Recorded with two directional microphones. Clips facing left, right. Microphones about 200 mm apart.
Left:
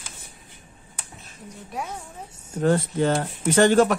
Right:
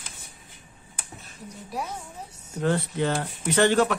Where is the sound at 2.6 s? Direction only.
45° left (ahead or behind).